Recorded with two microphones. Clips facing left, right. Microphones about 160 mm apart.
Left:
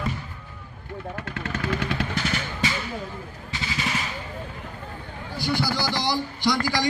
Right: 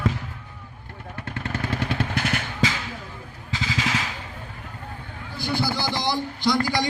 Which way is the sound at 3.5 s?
90° right.